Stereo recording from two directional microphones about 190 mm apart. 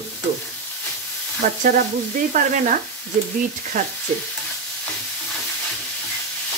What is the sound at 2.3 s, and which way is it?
Speech, 40° right (ahead or behind).